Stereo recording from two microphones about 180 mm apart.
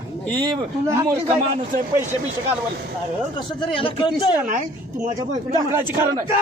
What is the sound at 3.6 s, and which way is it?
Speech, 30° left (ahead or behind).